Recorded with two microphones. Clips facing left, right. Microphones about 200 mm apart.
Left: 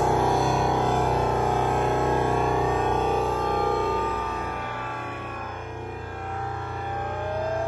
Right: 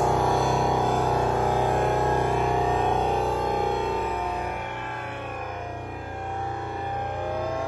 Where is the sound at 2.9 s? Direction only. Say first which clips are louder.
Even; 15° right (ahead or behind).